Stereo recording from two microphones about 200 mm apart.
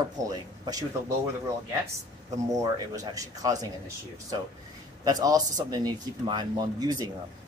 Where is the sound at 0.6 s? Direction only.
20° right (ahead or behind).